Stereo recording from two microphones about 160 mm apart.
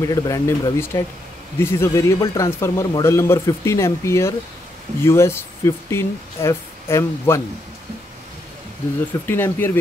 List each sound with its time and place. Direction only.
0.0 s speech: 20° left (ahead or behind)
9.2 s speech: 15° left (ahead or behind)